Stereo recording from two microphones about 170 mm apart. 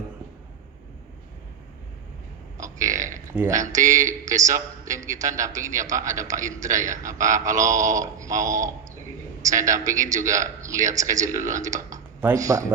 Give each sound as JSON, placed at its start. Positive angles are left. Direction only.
{"t": 2.6, "sound": "burping", "side_deg": -20}
{"t": 3.3, "sound": "a man's voice", "side_deg": -15}